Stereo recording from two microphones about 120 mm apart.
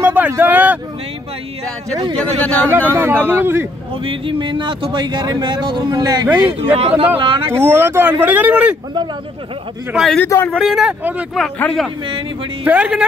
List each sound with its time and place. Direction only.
0.0 s a sound: 15° right (ahead or behind)
2.1 s speech: 10° left (ahead or behind)
2.9 s a man's voice: 20° right (ahead or behind)
3.9 s speech: 50° right (ahead or behind); by 6.2 s 35° right (ahead or behind)
6.4 s a man's voice: 50° right (ahead or behind)
7.2 s a man's voice: 45° right (ahead or behind)
7.5 s speech: 20° right (ahead or behind)
10.2 s speech: 20° left (ahead or behind)
10.6 s speech: 5° right (ahead or behind)
11.3 s speech: 10° left (ahead or behind)
12.6 s speech: 10° right (ahead or behind)